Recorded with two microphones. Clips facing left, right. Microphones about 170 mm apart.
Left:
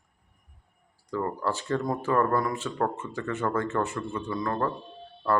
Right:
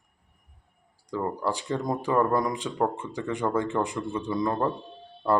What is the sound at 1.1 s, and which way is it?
Speech, 15° right (ahead or behind).